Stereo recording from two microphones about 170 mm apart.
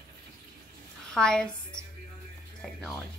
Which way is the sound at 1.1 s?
5° left (ahead or behind).